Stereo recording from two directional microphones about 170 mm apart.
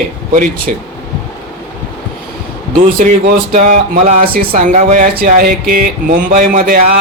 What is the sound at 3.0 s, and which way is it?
Speech, 50° right (ahead or behind).